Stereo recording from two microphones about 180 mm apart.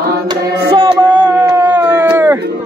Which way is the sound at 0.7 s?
25° right (ahead or behind).